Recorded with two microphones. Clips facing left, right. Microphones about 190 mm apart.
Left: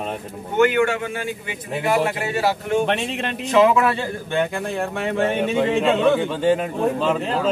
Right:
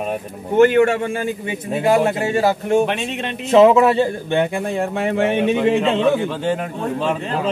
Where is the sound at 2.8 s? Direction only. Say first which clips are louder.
Right 1 dB; centre (ahead or behind).